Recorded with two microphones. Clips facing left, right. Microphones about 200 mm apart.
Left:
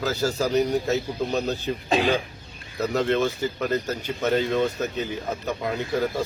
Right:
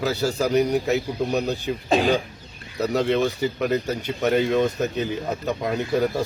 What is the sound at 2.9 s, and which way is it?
Speech, 15° right (ahead or behind).